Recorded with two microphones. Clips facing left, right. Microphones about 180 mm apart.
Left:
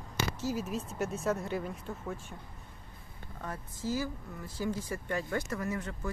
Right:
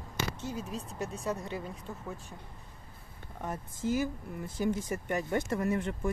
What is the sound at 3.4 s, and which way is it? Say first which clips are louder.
Speech: right 4 dB; 20° right (ahead or behind).